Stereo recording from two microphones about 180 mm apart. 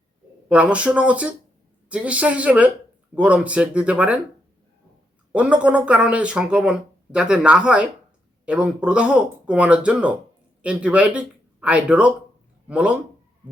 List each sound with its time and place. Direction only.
0.4 s speech: 5° right (ahead or behind)
5.3 s speech: 5° right (ahead or behind)